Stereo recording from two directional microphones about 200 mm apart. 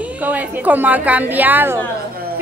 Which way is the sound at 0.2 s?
10° right (ahead or behind).